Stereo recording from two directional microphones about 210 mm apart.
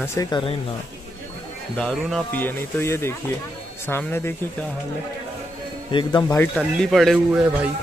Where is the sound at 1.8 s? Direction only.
5° left (ahead or behind).